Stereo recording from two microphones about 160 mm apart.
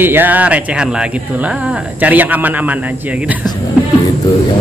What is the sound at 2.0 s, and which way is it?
Speech, 10° right (ahead or behind).